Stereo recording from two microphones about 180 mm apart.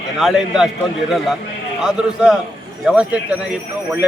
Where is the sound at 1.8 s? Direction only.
5° right (ahead or behind).